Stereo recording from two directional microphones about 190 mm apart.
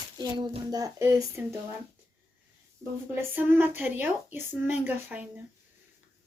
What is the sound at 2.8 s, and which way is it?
Speech, 10° right (ahead or behind).